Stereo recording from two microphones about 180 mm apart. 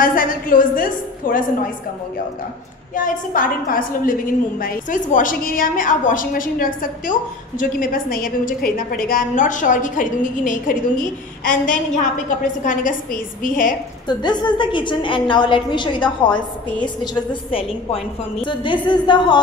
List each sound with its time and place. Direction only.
0.0 s a woman's voice: 50° left (ahead or behind)
3.0 s a woman's voice: 50° left (ahead or behind)
14.0 s a woman's voice: 25° left (ahead or behind)